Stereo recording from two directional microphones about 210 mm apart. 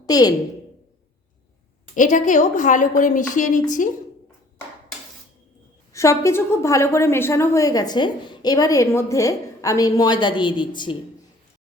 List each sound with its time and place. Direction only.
0.0 s a woman's voice: 20° left (ahead or behind)
2.0 s a woman's voice: 35° left (ahead or behind)
5.9 s a woman's voice: 15° left (ahead or behind)